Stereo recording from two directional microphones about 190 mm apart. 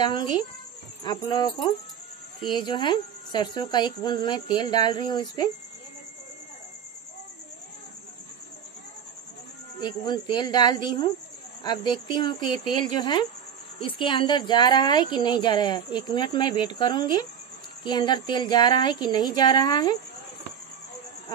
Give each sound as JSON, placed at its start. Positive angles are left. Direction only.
{"t": 0.0, "sound": "speech", "side_deg": 25}
{"t": 9.8, "sound": "speech", "side_deg": 25}